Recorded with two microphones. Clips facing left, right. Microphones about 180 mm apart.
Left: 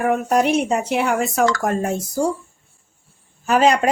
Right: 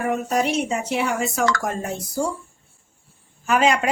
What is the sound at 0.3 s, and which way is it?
A woman's voice, 60° left (ahead or behind).